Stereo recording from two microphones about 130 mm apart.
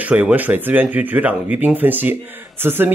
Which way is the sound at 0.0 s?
10° right (ahead or behind).